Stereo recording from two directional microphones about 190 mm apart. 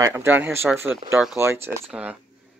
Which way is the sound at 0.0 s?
15° right (ahead or behind).